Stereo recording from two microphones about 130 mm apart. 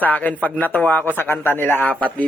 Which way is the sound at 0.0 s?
10° left (ahead or behind).